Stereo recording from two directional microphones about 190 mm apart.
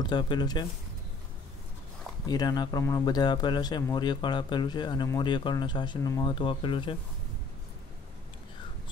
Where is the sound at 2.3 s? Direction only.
20° left (ahead or behind).